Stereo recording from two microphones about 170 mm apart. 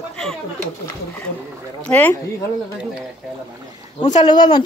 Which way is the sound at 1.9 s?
10° left (ahead or behind).